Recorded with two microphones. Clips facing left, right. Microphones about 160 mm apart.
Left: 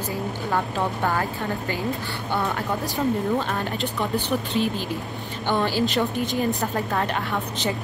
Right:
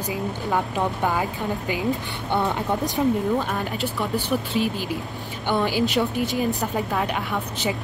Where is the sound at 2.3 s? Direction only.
20° right (ahead or behind).